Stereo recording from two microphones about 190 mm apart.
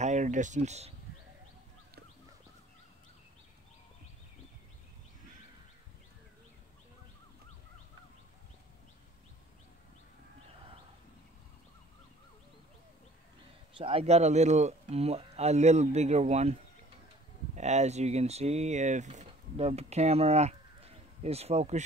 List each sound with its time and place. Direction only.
0.0 s speech: 40° right (ahead or behind)
13.7 s speech: 30° right (ahead or behind)
17.6 s speech: 35° right (ahead or behind)